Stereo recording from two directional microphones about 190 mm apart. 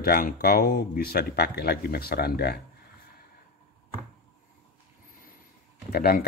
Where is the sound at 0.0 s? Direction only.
55° left (ahead or behind).